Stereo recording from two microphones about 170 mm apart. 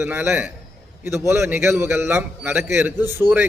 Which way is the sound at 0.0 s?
10° right (ahead or behind).